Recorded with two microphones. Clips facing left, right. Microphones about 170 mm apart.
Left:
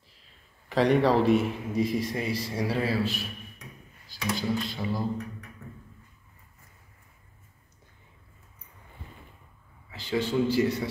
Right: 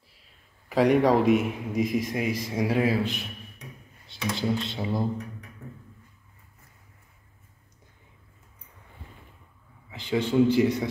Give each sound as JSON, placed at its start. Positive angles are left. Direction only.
{"t": 0.7, "sound": "a man's voice", "side_deg": -10}
{"t": 9.8, "sound": "speech", "side_deg": -20}